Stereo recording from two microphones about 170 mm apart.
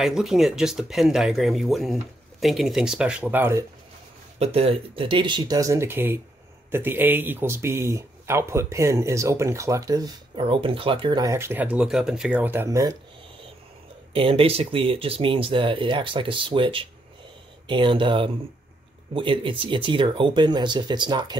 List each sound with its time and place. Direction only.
0.0 s speech: centre (ahead or behind)
4.4 s speech: 35° right (ahead or behind); by 12.9 s 20° right (ahead or behind)
14.1 s speech: 35° right (ahead or behind)